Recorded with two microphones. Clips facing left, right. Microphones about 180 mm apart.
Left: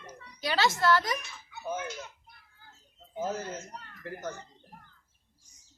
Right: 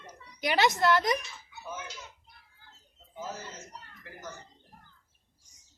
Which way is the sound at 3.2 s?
55° left (ahead or behind).